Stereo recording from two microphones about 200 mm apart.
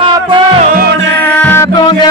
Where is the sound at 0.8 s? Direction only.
55° right (ahead or behind).